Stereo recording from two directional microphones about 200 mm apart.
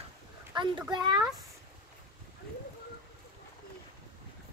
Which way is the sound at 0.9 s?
20° right (ahead or behind).